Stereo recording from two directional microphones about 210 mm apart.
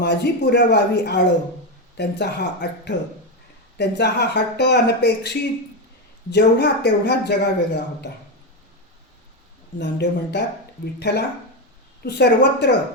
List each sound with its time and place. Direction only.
0.0 s a man's voice: 55° left (ahead or behind)
9.7 s speech: 55° left (ahead or behind)